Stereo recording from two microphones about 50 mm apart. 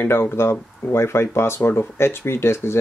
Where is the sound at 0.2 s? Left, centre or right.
Left.